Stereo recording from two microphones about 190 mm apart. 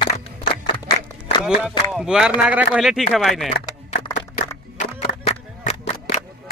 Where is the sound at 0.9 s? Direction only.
20° left (ahead or behind).